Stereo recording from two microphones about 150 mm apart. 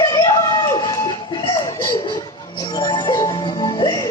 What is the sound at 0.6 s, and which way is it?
Chicken, 30° left (ahead or behind).